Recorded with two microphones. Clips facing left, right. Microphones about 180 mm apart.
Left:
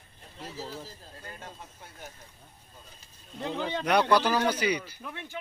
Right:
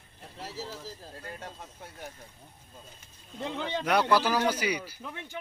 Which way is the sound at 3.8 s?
5° right (ahead or behind).